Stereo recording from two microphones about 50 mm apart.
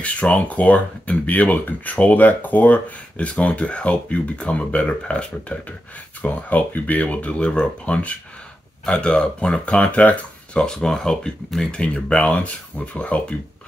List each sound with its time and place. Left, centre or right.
0.0 s speech: left
6.2 s speech: left
10.6 s speech: centre; by 13.2 s left